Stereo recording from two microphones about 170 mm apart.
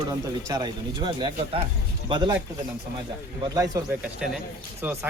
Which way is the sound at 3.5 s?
20° right (ahead or behind).